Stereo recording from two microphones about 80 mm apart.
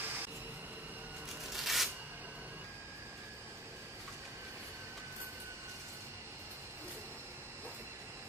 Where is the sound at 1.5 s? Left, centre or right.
Centre.